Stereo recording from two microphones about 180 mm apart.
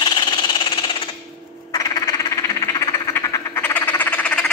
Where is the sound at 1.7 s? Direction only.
20° left (ahead or behind).